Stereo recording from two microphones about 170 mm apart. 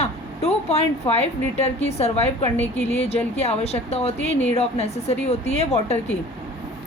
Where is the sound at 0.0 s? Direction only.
35° left (ahead or behind).